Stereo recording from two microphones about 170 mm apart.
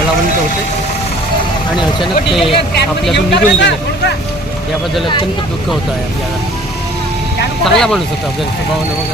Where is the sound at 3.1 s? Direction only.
90° left.